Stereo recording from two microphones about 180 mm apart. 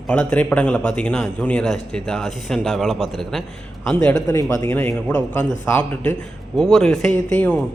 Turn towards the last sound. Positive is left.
turn(degrees=10)  # may be behind; listen again after turning